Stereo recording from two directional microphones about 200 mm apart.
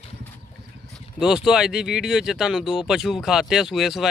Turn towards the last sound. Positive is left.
turn(degrees=0)  # may be behind; listen again after turning